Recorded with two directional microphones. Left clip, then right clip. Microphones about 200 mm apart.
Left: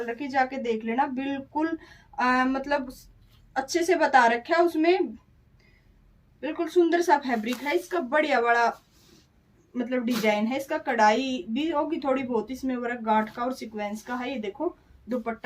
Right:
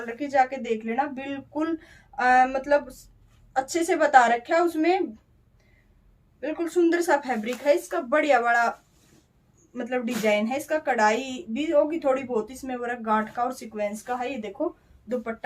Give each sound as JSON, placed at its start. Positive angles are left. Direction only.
{"t": 0.2, "sound": "a woman's voice", "side_deg": -30}
{"t": 6.4, "sound": "a woman's voice", "side_deg": -35}
{"t": 7.6, "sound": "a woman's voice", "side_deg": -30}
{"t": 9.7, "sound": "a woman's voice", "side_deg": -40}